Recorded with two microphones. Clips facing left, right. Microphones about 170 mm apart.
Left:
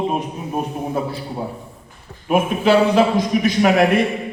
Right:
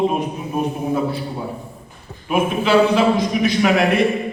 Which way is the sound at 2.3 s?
45° left (ahead or behind).